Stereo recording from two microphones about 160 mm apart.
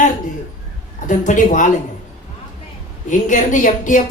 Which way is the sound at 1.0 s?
55° left (ahead or behind).